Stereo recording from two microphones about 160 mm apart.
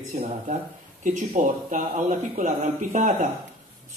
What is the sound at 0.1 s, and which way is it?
A man's voice, 50° right (ahead or behind).